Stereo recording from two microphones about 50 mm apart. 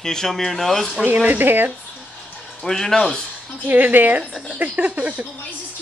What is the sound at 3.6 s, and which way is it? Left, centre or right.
Speech, right.